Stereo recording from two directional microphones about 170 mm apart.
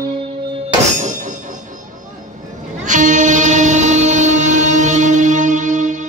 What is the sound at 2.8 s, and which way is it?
Music, 45° right (ahead or behind).